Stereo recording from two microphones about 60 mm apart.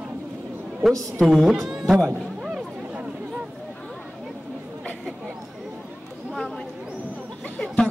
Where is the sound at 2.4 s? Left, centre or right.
Centre.